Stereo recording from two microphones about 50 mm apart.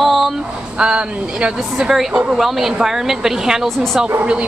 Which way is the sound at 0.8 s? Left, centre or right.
Centre.